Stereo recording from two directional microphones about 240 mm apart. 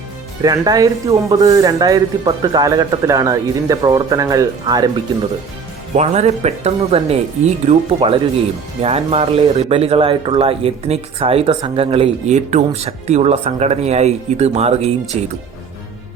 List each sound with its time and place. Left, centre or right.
0.4 s speech: centre
6.0 s a man's voice: right